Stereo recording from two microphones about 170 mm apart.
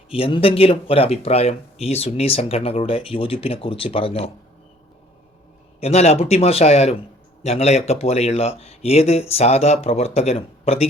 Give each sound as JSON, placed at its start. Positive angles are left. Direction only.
{"t": 0.1, "sound": "speech", "side_deg": 30}
{"t": 5.8, "sound": "speech", "side_deg": 40}